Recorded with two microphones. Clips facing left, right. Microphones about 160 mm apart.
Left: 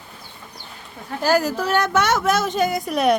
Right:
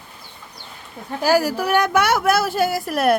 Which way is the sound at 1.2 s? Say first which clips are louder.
Right 1 dB; 10° right (ahead or behind).